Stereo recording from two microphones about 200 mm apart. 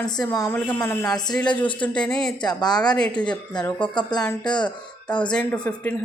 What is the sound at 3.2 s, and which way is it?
Speech, 5° left (ahead or behind).